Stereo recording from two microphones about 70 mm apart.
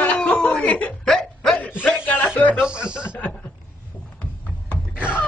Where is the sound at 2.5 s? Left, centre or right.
Centre.